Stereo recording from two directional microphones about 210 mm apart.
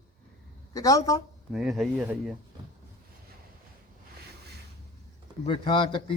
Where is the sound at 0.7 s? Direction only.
15° left (ahead or behind).